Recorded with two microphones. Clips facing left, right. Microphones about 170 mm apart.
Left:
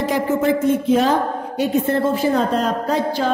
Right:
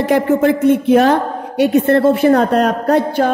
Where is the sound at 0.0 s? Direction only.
60° right (ahead or behind).